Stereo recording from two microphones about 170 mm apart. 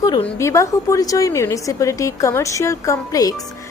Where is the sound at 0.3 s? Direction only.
15° left (ahead or behind).